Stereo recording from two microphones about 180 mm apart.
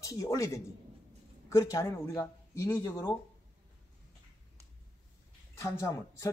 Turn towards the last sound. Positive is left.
turn(degrees=15)  # may be behind; listen again after turning